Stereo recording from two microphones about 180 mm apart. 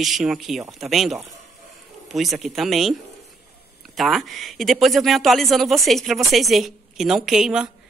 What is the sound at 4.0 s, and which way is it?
A woman's voice, centre (ahead or behind).